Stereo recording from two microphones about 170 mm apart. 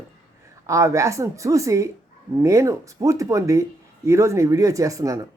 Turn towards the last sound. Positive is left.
turn(degrees=-20)  # may be behind; listen again after turning